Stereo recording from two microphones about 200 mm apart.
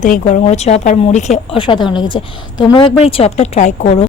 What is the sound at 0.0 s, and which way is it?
A woman's voice, 40° left (ahead or behind).